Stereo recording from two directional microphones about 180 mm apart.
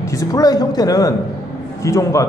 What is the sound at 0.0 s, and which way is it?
A man's voice, 15° left (ahead or behind).